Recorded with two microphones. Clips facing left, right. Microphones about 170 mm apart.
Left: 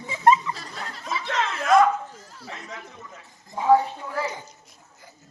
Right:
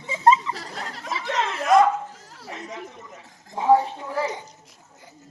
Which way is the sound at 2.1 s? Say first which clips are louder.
Left 1 dB; 80° right.